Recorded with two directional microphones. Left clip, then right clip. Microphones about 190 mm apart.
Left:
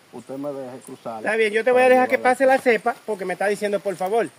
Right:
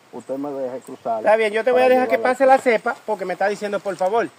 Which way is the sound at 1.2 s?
30° left (ahead or behind).